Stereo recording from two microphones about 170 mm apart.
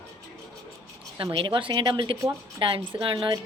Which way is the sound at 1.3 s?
30° right (ahead or behind).